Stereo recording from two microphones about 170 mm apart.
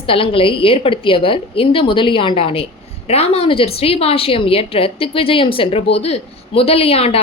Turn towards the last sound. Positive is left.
turn(degrees=35)  # may be behind; listen again after turning